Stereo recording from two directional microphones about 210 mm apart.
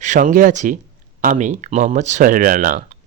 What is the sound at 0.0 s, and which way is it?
Speech, 35° right (ahead or behind).